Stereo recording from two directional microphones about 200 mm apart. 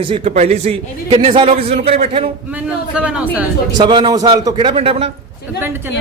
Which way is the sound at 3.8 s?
20° right (ahead or behind).